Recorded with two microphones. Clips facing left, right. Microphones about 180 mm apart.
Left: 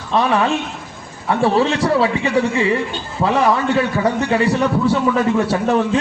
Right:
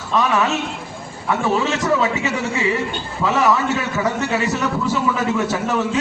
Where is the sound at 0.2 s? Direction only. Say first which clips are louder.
Left 2 dB; 30° left (ahead or behind).